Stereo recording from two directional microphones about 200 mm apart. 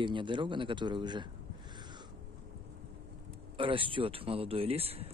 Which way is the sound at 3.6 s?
25° right (ahead or behind).